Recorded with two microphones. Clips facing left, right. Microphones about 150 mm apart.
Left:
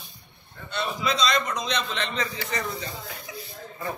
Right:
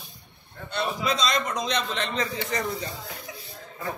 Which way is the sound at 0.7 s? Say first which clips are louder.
Right 1 dB; 50° right (ahead or behind).